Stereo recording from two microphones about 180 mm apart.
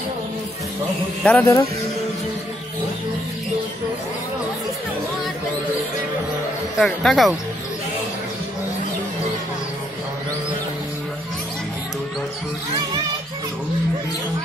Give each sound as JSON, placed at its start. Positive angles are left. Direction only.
{"t": 1.2, "sound": "speech", "side_deg": 15}
{"t": 6.8, "sound": "speech", "side_deg": 0}